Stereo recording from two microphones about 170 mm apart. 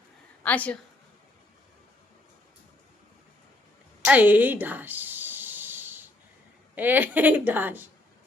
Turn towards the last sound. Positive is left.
turn(degrees=-10)  # may be behind; listen again after turning